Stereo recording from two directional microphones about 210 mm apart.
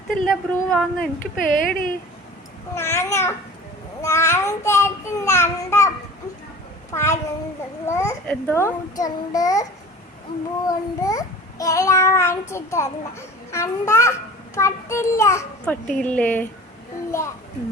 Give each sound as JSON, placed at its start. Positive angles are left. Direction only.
{"t": 0.3, "sound": "speech", "side_deg": 5}
{"t": 1.5, "sound": "speech", "side_deg": 40}
{"t": 2.7, "sound": "child singing", "side_deg": 10}
{"t": 6.9, "sound": "child singing", "side_deg": 10}
{"t": 10.7, "sound": "child singing", "side_deg": 15}